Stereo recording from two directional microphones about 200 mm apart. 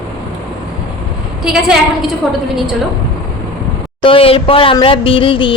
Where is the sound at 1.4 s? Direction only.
Centre (ahead or behind).